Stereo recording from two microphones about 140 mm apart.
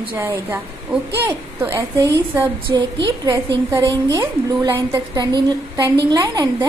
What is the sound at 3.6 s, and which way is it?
A woman's voice, 20° right (ahead or behind).